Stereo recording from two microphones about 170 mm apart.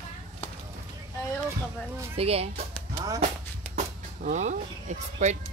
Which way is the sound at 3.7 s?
45° right (ahead or behind).